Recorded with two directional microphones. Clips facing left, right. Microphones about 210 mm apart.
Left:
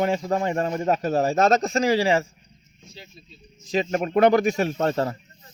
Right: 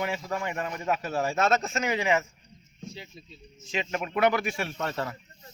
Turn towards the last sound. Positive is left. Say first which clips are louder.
# left 9 dB
turn(degrees=40)  # may be behind; listen again after turning